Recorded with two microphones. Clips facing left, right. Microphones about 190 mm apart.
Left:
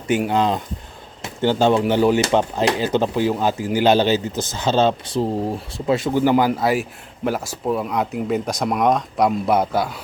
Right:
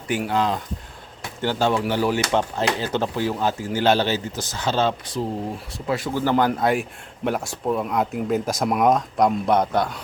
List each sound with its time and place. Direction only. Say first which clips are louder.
0.1 s speech: left 4 dB; 20° left (ahead or behind)